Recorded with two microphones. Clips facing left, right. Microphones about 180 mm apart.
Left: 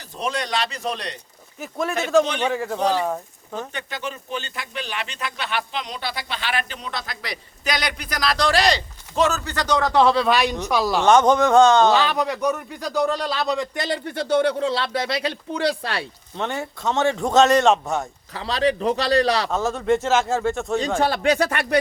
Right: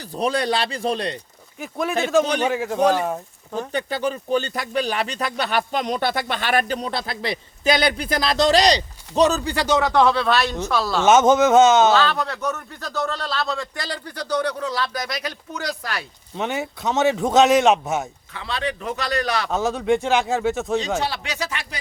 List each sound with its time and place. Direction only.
0.2 s speech: 35° right (ahead or behind)
1.5 s a man's voice: centre (ahead or behind)
3.7 s speech: 35° right (ahead or behind); by 9.6 s 15° right (ahead or behind)
9.9 s a man's voice: 5° left (ahead or behind)
11.0 s a man's voice: 5° right (ahead or behind)
11.9 s speech: 15° left (ahead or behind)
16.4 s a man's voice: centre (ahead or behind)
18.3 s a man's voice: 35° left (ahead or behind)
19.5 s a man's voice: centre (ahead or behind)
21.0 s speech: 50° left (ahead or behind)